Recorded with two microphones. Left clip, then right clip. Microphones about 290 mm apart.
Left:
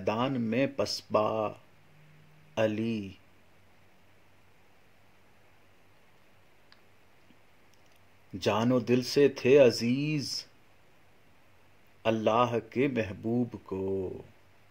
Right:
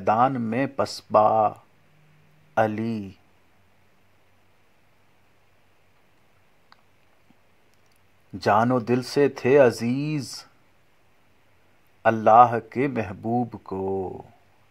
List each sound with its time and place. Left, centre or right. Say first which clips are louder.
0.0 s speech: right 10 dB; centre
2.5 s speech: right 6 dB; centre
8.4 s speech: right 8 dB; centre
12.0 s speech: right 11 dB; centre